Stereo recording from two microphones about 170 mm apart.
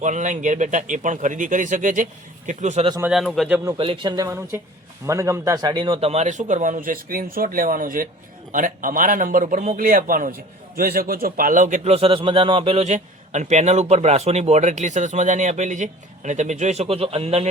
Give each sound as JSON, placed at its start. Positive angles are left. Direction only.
{"t": 0.0, "sound": "a man's voice", "side_deg": -45}
{"t": 3.0, "sound": "a man's voice", "side_deg": -5}
{"t": 3.8, "sound": "a man's voice", "side_deg": -30}